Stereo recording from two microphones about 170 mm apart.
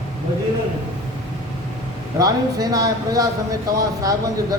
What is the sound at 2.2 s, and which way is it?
Speech, 20° right (ahead or behind).